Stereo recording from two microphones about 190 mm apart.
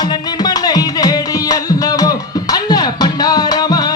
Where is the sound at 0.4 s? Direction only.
20° left (ahead or behind).